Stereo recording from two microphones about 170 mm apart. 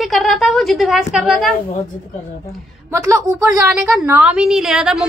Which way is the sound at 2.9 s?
15° right (ahead or behind).